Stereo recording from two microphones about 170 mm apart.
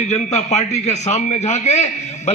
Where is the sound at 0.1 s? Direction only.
40° left (ahead or behind).